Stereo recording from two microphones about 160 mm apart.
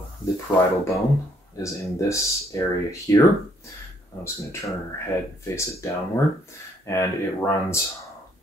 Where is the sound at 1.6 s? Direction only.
20° left (ahead or behind).